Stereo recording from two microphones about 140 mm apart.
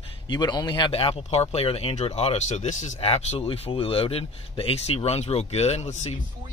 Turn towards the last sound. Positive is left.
turn(degrees=55)  # may be behind; listen again after turning